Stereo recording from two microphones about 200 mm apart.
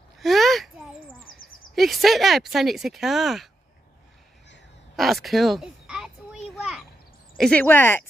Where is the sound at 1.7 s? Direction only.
Centre (ahead or behind).